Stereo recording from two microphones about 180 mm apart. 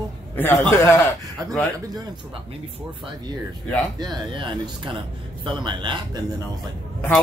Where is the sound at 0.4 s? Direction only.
10° left (ahead or behind).